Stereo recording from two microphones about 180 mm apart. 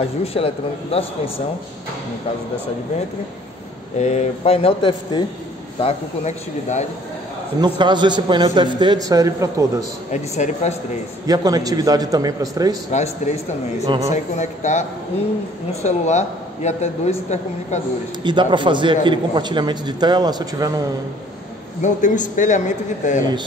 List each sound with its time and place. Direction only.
0.0 s a man's voice: 35° left (ahead or behind)
4.0 s a man's voice: 40° left (ahead or behind)
7.6 s a man's voice: 25° right (ahead or behind)
10.1 s a man's voice: 40° left (ahead or behind)
11.2 s a man's voice: 20° right (ahead or behind)
12.9 s a man's voice: 40° left (ahead or behind)
18.2 s a man's voice: 25° right (ahead or behind)
21.8 s speech: 45° left (ahead or behind)